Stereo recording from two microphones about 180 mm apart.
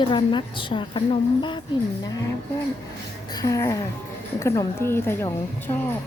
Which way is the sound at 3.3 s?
20° left (ahead or behind).